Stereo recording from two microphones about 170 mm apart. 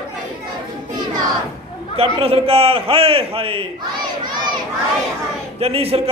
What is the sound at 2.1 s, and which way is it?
A man's voice, 35° right (ahead or behind).